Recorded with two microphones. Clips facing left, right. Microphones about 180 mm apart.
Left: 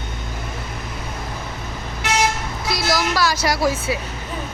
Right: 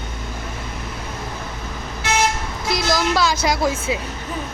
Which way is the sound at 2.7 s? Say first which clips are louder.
Right 2 dB; 20° right (ahead or behind).